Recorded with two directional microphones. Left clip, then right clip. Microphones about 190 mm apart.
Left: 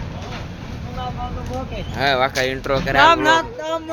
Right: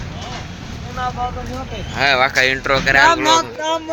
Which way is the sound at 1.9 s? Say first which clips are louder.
Right 4 dB; 15° left (ahead or behind).